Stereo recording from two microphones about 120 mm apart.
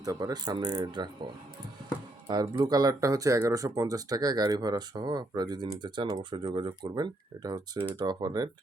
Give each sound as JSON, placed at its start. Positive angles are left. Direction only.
{"t": 0.0, "sound": "speech", "side_deg": -30}